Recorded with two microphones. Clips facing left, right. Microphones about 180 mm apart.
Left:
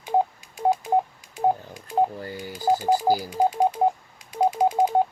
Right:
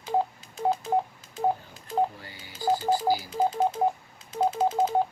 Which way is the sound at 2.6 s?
10° left (ahead or behind).